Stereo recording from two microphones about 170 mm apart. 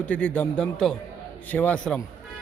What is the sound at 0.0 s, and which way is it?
A man's voice, 10° left (ahead or behind).